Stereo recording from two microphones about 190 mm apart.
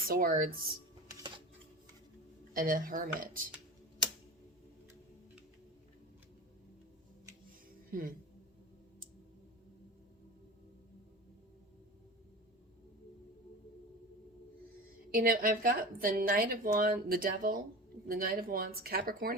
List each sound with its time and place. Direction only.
0.1 s a woman's voice: 50° right (ahead or behind)
2.5 s a woman's voice: 45° right (ahead or behind)
7.9 s speech: 45° right (ahead or behind)
15.1 s a woman's voice: 50° right (ahead or behind)